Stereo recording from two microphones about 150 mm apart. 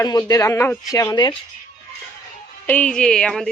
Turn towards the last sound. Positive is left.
turn(degrees=5)  # may be behind; listen again after turning